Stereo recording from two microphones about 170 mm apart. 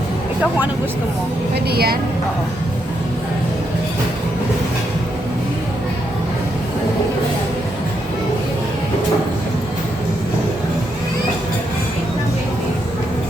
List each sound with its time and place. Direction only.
1.5 s a woman's voice: 65° right (ahead or behind)